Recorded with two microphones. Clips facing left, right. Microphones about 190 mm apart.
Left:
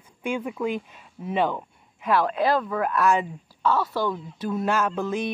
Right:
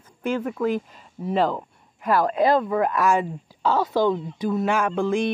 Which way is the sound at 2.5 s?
20° right (ahead or behind).